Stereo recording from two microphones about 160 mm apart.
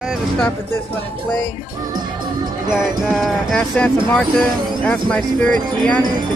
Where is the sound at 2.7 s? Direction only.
Centre (ahead or behind).